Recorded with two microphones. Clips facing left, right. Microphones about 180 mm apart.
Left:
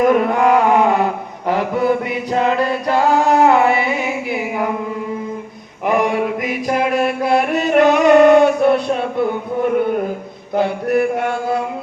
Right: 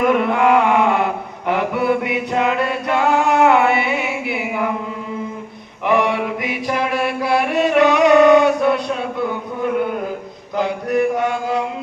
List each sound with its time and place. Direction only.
0.0 s mantra: 40° left (ahead or behind)
1.5 s chant: 40° left (ahead or behind)
5.8 s mantra: 45° left (ahead or behind)
10.5 s mantra: 60° left (ahead or behind)